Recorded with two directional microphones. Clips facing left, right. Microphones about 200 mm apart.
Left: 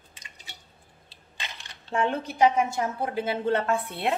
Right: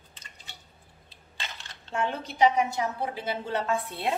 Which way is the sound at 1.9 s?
50° left (ahead or behind).